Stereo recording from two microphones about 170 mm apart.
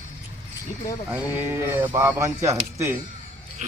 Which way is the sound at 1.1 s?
15° right (ahead or behind).